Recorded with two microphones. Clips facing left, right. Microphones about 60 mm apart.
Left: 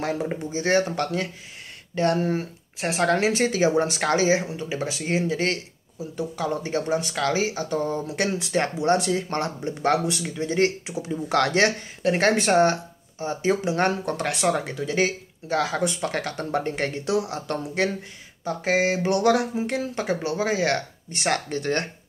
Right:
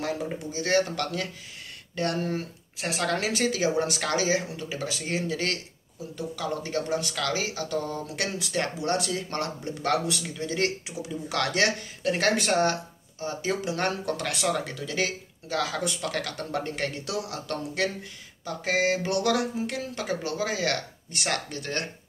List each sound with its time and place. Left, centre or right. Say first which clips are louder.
0.0 s speech: left 4 dB; left